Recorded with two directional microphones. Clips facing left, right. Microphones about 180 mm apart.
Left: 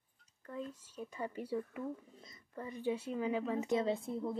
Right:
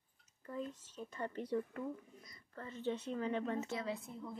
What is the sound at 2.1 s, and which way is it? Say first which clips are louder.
Speech: left 4 dB; 25° left (ahead or behind).